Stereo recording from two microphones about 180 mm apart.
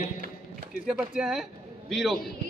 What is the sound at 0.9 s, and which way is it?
Speech, centre (ahead or behind).